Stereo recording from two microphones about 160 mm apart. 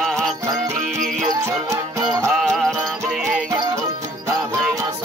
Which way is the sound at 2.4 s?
Centre (ahead or behind).